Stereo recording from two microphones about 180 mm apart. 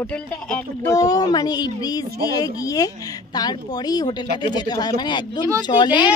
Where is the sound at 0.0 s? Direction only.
5° left (ahead or behind); by 6.0 s 25° left (ahead or behind).